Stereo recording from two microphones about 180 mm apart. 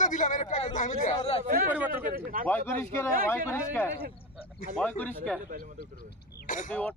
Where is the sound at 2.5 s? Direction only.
10° left (ahead or behind).